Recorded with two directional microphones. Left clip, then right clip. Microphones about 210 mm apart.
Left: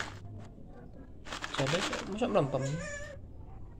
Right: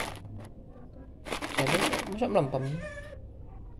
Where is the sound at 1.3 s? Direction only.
25° right (ahead or behind).